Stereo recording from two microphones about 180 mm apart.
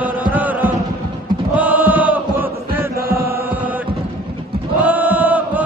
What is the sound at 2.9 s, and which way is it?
Chant, 55° right (ahead or behind).